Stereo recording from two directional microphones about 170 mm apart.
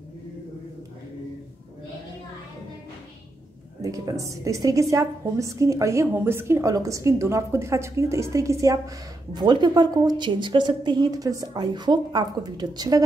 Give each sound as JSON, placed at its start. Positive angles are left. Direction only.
{"t": 3.8, "sound": "a woman's voice", "side_deg": -20}